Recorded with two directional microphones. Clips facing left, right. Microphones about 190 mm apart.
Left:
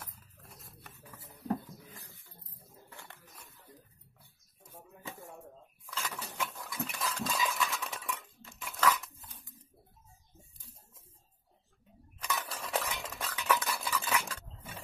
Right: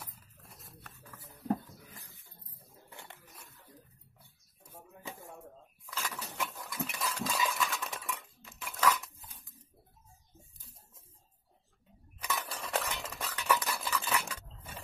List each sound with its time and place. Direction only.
0.0 s a sound: centre (ahead or behind)
2.9 s dog: 20° right (ahead or behind)
5.0 s a sound: 20° right (ahead or behind)
5.9 s patter: centre (ahead or behind)
12.3 s cutlery: centre (ahead or behind)
13.5 s stir: 5° right (ahead or behind)
14.1 s scissors: 5° right (ahead or behind)